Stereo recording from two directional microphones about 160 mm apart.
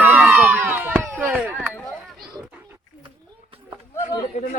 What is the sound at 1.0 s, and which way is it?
Chop, 10° right (ahead or behind).